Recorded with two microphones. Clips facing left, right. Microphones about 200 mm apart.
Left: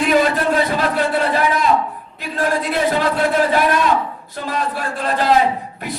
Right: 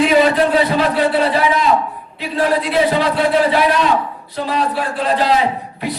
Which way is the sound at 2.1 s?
45° left (ahead or behind).